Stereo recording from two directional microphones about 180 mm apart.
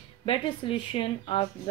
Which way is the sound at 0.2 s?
30° left (ahead or behind).